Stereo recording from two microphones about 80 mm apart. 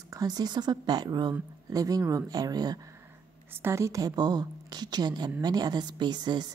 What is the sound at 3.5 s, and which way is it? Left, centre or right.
A woman's voice, right.